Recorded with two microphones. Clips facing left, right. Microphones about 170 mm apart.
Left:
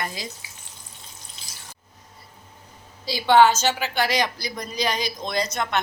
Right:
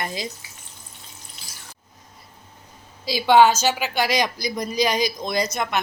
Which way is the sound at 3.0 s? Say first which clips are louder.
Right 1 dB; 15° right (ahead or behind).